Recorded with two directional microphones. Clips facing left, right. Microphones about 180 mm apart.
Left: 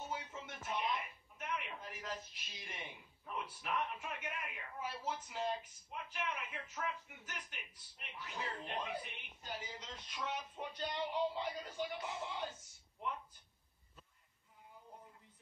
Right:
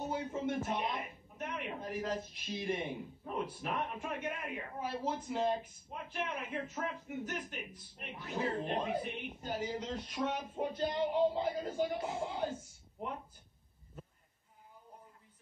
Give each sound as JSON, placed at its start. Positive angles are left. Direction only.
{"t": 0.0, "sound": "a sound", "side_deg": -35}
{"t": 0.5, "sound": "a woman's voice", "side_deg": -40}
{"t": 9.1, "sound": "a woman's voice", "side_deg": -45}
{"t": 11.6, "sound": "a woman's voice", "side_deg": -35}
{"t": 12.1, "sound": "speech", "side_deg": -45}